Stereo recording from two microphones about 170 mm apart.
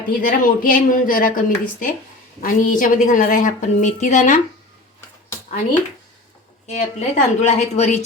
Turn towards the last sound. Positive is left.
turn(degrees=40)  # may be behind; listen again after turning